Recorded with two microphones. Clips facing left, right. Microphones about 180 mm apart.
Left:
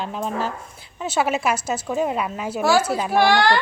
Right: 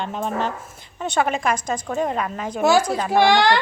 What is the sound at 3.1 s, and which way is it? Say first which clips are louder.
Speech: right 1 dB; 15° right (ahead or behind).